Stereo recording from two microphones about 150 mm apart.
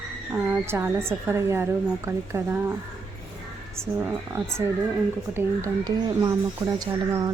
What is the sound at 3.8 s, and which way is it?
Speech, 20° right (ahead or behind).